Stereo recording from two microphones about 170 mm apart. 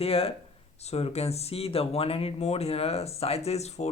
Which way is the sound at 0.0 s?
35° left (ahead or behind).